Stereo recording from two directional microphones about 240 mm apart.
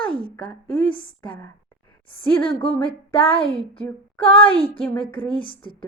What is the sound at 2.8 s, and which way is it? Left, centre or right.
A woman's voice, left.